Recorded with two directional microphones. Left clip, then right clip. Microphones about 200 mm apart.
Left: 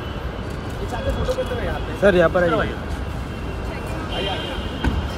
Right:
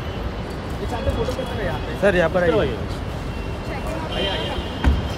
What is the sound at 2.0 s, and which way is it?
Speech, 30° left (ahead or behind).